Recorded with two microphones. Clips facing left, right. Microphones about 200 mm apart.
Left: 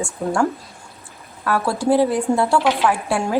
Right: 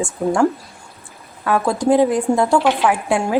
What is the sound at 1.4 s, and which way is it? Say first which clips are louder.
Speech: right 3 dB; 20° right (ahead or behind).